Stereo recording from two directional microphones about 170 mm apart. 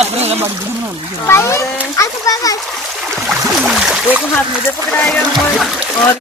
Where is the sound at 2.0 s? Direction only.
20° left (ahead or behind).